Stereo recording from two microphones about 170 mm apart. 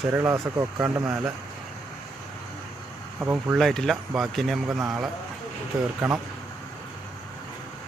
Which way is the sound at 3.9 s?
10° right (ahead or behind).